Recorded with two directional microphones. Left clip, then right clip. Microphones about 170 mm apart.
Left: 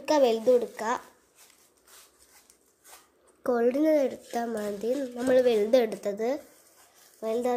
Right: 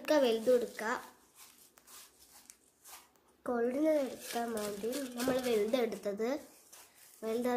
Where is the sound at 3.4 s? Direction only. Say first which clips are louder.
Left 8 dB; 35° left (ahead or behind).